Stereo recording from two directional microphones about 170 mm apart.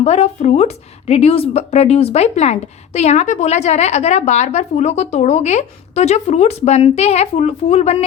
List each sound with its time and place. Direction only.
0.0 s a woman's voice: 40° left (ahead or behind)